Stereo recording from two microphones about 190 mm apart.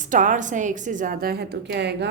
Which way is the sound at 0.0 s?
40° right (ahead or behind).